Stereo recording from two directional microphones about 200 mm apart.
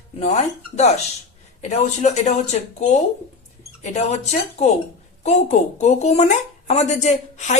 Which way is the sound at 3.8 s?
35° left (ahead or behind).